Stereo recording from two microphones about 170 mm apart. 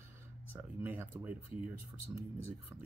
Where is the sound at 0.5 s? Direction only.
10° right (ahead or behind).